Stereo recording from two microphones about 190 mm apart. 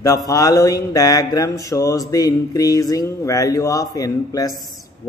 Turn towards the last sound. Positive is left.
turn(degrees=20)  # may be behind; listen again after turning